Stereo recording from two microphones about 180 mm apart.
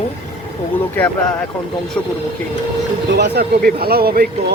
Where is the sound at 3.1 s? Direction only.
65° right (ahead or behind).